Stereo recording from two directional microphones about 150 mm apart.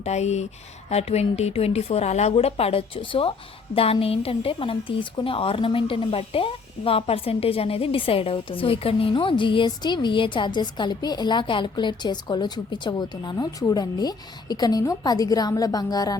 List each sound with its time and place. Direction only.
0.0 s a woman's voice: 45° left (ahead or behind); by 16.1 s 25° left (ahead or behind)